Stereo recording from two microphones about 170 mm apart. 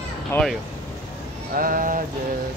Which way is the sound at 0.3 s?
5° left (ahead or behind).